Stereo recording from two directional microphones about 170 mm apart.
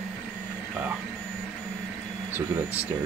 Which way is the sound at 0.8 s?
10° right (ahead or behind).